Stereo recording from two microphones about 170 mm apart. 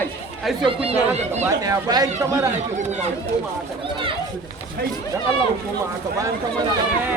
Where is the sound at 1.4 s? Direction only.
20° right (ahead or behind).